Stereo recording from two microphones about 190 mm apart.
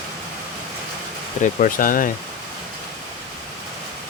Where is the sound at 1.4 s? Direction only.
45° left (ahead or behind).